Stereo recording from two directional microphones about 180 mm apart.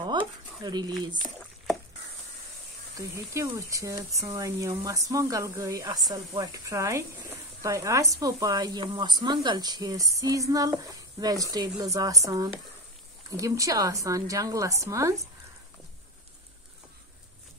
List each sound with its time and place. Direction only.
0.0 s speech: 25° right (ahead or behind)
3.0 s speech: 15° right (ahead or behind)
13.4 s speech: 20° right (ahead or behind)